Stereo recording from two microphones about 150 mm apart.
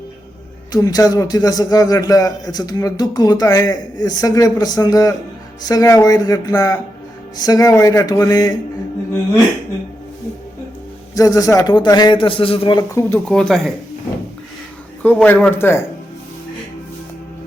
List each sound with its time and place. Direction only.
0.7 s a man's voice: 25° left (ahead or behind)
11.1 s a man's voice: 25° left (ahead or behind)
12.9 s a man's voice: 15° left (ahead or behind)
13.2 s speech: 5° left (ahead or behind)
15.0 s a man's voice: 10° left (ahead or behind)